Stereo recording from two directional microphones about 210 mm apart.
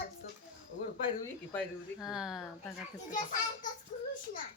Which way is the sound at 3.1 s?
40° left (ahead or behind).